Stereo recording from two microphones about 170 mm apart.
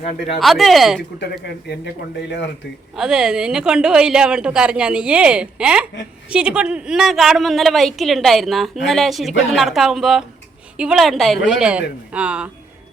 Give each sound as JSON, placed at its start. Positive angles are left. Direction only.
{"t": 0.3, "sound": "a woman's voice", "side_deg": 0}
{"t": 1.2, "sound": "speech", "side_deg": 80}
{"t": 2.9, "sound": "a woman's voice", "side_deg": -5}